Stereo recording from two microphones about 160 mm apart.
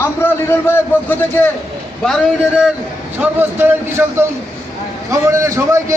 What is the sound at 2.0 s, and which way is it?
Speech, centre (ahead or behind).